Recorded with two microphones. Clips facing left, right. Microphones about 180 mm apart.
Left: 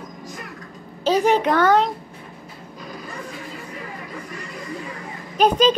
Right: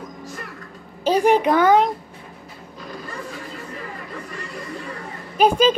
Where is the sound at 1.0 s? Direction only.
10° right (ahead or behind).